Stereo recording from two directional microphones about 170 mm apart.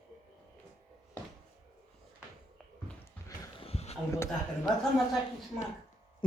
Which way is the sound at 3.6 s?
35° left (ahead or behind).